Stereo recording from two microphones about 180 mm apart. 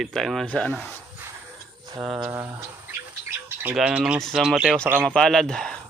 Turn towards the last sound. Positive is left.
turn(degrees=5)  # may be behind; listen again after turning